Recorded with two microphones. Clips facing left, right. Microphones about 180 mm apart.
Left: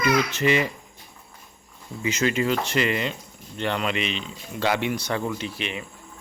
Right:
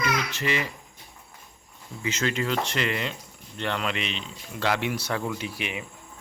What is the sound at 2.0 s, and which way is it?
Speech, 10° left (ahead or behind).